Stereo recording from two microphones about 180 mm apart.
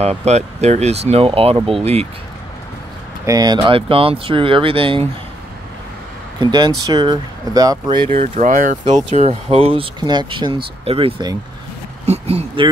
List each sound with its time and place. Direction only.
0.0 s speech: 35° right (ahead or behind)
3.3 s speech: 20° right (ahead or behind)
6.4 s speech: 25° right (ahead or behind)
8.1 s speech: 45° right (ahead or behind)